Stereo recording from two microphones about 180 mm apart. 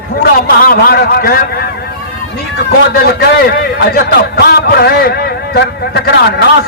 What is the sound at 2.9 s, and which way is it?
A man's voice, 60° left (ahead or behind).